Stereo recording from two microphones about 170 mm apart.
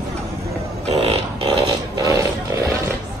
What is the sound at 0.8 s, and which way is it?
Music, 35° right (ahead or behind).